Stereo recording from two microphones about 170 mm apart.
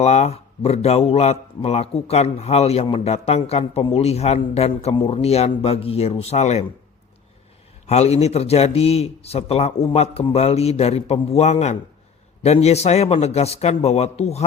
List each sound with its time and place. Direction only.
0.0 s a man's voice: 40° left (ahead or behind)
7.9 s a man's voice: 40° left (ahead or behind)